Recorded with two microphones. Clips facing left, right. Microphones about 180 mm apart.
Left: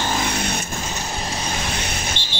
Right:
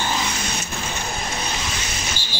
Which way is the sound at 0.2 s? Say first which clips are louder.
Left 3 dB; 60° left (ahead or behind).